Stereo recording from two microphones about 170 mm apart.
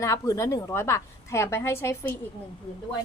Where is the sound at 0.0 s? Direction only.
20° left (ahead or behind).